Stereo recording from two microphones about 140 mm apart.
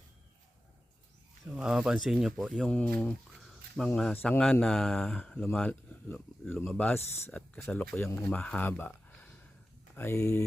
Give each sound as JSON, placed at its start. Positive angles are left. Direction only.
{"t": 1.5, "sound": "speech", "side_deg": -5}